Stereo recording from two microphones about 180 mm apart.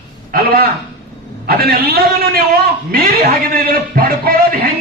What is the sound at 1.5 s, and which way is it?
A man's voice, 60° right (ahead or behind).